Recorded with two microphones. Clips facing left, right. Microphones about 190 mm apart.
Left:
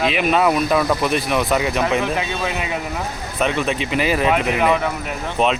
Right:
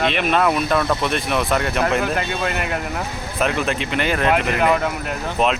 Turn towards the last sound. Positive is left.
turn(degrees=0)  # may be behind; listen again after turning